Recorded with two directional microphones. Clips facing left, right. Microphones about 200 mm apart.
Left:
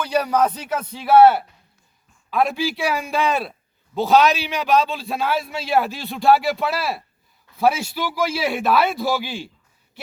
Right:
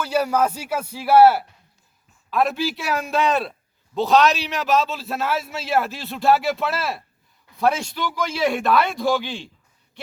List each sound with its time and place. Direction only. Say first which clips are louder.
0.0 s a man's voice: left 1 dB; 5° right (ahead or behind)